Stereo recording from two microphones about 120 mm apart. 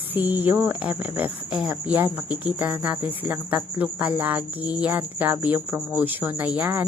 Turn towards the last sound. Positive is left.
turn(degrees=-15)  # may be behind; listen again after turning